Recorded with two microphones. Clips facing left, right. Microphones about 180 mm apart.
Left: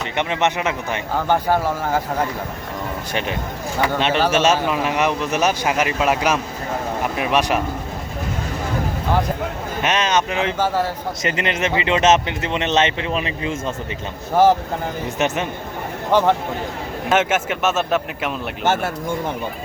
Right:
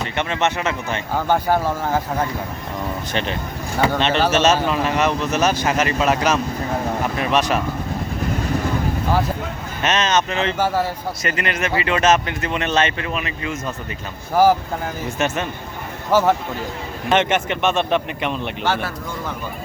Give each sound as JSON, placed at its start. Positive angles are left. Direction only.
{"t": 0.0, "sound": "speech", "side_deg": 15}
{"t": 3.1, "sound": "speech", "side_deg": 10}
{"t": 9.8, "sound": "speech", "side_deg": 10}
{"t": 15.2, "sound": "speech", "side_deg": 20}
{"t": 16.1, "sound": "a man's voice", "side_deg": -5}
{"t": 17.1, "sound": "a man's voice", "side_deg": 5}